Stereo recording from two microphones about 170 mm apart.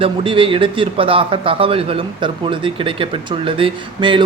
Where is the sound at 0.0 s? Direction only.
30° right (ahead or behind).